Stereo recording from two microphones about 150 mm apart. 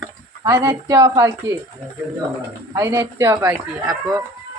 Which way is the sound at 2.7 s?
20° right (ahead or behind).